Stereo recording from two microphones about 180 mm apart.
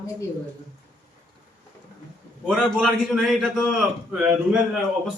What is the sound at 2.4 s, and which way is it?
Speech, centre (ahead or behind).